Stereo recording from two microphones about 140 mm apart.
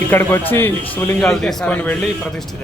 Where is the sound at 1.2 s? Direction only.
5° left (ahead or behind).